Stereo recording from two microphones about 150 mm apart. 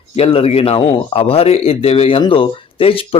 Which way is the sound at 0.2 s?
40° left (ahead or behind).